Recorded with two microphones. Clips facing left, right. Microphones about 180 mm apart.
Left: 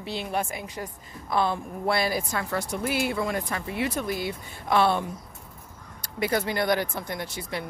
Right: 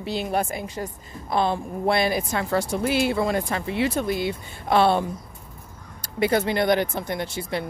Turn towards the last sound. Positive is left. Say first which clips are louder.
# right 5 dB
turn(degrees=-30)  # may be behind; listen again after turning